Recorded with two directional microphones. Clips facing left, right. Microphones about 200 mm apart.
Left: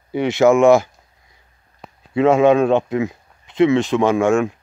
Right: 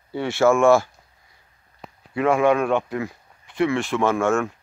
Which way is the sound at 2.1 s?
25° left (ahead or behind).